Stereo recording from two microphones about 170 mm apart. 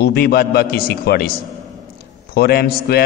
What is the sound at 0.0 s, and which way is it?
A man's voice, 65° left (ahead or behind).